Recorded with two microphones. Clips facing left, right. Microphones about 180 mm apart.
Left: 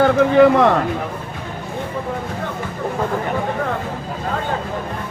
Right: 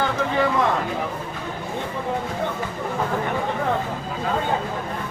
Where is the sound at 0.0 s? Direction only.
65° left (ahead or behind).